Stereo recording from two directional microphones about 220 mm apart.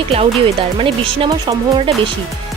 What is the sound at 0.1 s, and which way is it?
Speech, 25° right (ahead or behind).